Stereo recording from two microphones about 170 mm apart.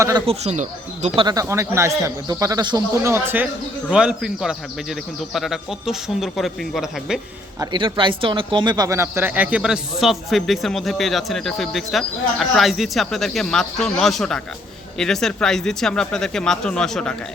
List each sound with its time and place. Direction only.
0.3 s speech: 45° right (ahead or behind)
1.2 s a man's voice: 20° right (ahead or behind); by 7.2 s centre (ahead or behind)
7.6 s speech: 25° right (ahead or behind); by 17.2 s 5° left (ahead or behind)